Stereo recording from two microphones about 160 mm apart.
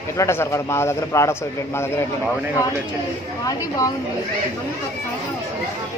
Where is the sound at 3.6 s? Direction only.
20° left (ahead or behind).